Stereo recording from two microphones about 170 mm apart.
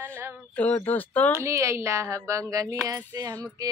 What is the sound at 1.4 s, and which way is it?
Child singing, 15° right (ahead or behind).